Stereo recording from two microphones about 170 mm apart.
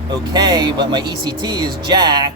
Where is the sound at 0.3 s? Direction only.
25° right (ahead or behind).